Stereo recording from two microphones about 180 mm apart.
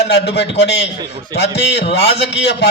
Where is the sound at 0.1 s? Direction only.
75° left (ahead or behind).